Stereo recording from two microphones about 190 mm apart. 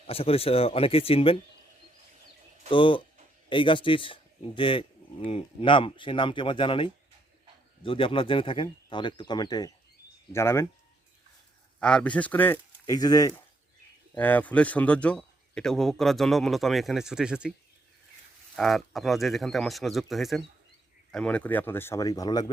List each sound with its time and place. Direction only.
0.1 s speech: 30° left (ahead or behind)
2.6 s speech: 25° left (ahead or behind)
11.8 s speech: 5° left (ahead or behind)
12.8 s speech: 20° left (ahead or behind)
14.2 s a man's voice: 10° left (ahead or behind)
18.5 s a man's voice: centre (ahead or behind); by 22.4 s 20° left (ahead or behind)